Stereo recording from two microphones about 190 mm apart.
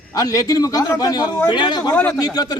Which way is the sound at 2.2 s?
20° left (ahead or behind).